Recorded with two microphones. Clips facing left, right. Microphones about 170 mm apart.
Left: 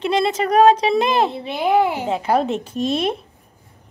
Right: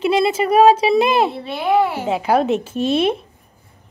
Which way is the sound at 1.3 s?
15° left (ahead or behind).